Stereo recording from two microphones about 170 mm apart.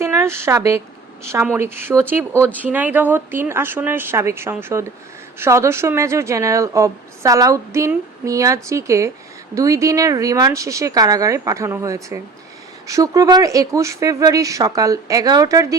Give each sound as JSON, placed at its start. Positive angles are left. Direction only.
{"t": 0.0, "sound": "a woman's voice", "side_deg": -15}